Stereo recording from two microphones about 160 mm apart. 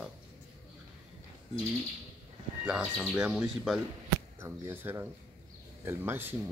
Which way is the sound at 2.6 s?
5° right (ahead or behind).